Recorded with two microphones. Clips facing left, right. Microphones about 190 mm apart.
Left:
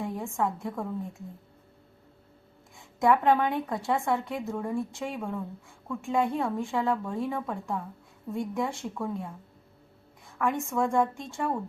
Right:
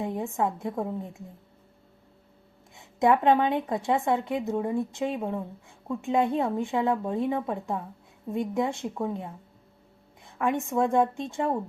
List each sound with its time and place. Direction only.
0.0 s a woman's voice: 20° right (ahead or behind)
2.7 s a woman's voice: 20° right (ahead or behind)